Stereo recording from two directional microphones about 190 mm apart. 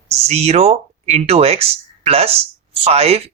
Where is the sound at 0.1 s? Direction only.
35° right (ahead or behind).